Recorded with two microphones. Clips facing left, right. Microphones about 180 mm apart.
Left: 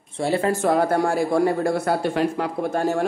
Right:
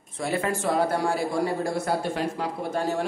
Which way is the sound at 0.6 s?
50° left (ahead or behind).